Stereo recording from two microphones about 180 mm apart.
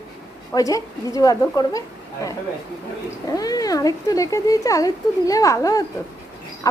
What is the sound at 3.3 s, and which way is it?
Speech, 20° left (ahead or behind).